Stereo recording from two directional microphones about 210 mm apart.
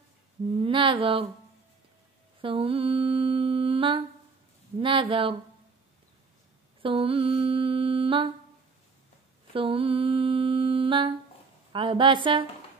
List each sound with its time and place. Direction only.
0.6 s a woman's voice: 25° right (ahead or behind)
2.4 s humming: 25° right (ahead or behind)
4.7 s a woman's voice: 25° right (ahead or behind)
6.8 s humming: 25° right (ahead or behind)
9.5 s mantra: 25° right (ahead or behind)
11.7 s a woman's voice: 25° right (ahead or behind)